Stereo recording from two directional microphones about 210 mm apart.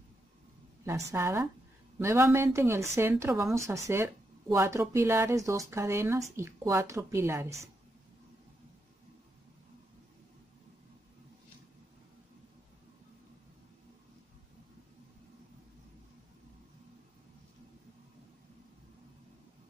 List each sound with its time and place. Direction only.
0.8 s speech: 10° right (ahead or behind)